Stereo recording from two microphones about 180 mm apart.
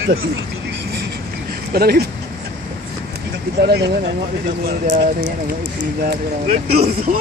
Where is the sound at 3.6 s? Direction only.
65° right (ahead or behind).